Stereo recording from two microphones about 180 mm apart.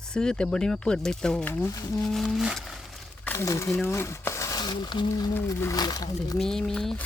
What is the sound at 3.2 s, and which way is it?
Speech, 15° left (ahead or behind).